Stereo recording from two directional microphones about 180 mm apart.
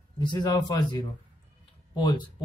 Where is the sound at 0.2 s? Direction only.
25° left (ahead or behind).